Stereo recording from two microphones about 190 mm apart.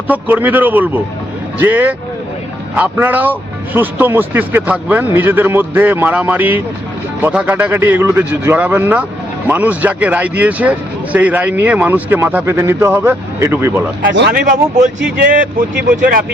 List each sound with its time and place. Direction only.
0.1 s speech: 10° right (ahead or behind)
14.1 s speech: 60° right (ahead or behind)
14.4 s speech: 40° right (ahead or behind)
16.0 s speech: 50° right (ahead or behind)